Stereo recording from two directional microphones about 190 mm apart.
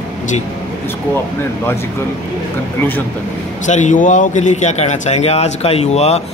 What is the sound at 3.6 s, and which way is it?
A man's voice, 40° left (ahead or behind).